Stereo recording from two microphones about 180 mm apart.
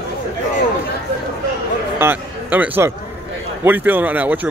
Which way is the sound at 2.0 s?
10° right (ahead or behind).